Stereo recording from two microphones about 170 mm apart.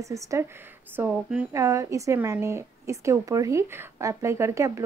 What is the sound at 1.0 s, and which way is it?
A child's voice, 10° right (ahead or behind).